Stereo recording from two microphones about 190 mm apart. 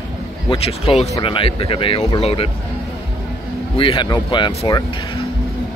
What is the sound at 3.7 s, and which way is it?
Speech, 25° left (ahead or behind).